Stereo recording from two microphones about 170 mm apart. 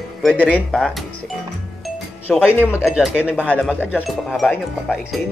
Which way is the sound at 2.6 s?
15° left (ahead or behind).